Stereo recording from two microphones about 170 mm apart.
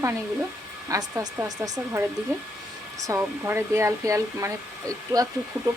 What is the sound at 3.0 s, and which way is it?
Speech, 15° right (ahead or behind).